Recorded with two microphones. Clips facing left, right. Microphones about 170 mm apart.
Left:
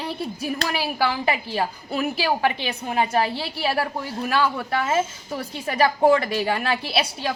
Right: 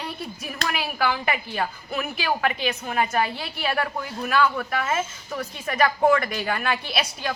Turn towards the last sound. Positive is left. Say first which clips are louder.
# left 3 dB
turn(degrees=30)  # may be behind; listen again after turning